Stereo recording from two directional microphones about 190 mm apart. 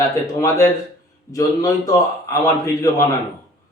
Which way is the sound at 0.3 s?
15° left (ahead or behind).